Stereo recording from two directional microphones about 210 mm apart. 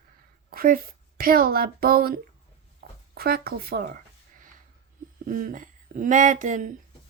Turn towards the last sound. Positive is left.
turn(degrees=-35)  # may be behind; listen again after turning